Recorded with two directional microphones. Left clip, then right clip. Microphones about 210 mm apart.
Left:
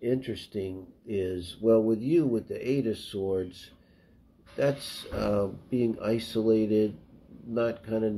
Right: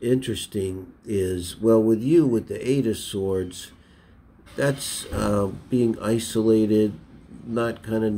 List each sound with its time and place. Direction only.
0.0 s speech: 25° right (ahead or behind)
4.6 s speech: 15° right (ahead or behind)